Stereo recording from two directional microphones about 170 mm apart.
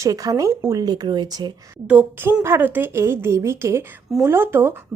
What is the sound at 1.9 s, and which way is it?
Speech, 10° right (ahead or behind).